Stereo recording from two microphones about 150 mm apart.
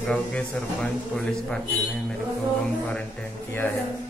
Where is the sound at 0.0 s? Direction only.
10° left (ahead or behind).